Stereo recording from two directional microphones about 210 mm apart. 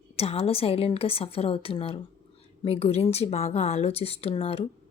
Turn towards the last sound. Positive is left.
turn(degrees=30)  # may be behind; listen again after turning